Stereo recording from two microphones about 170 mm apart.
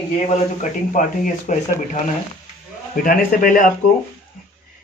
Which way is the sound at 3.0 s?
55° left (ahead or behind).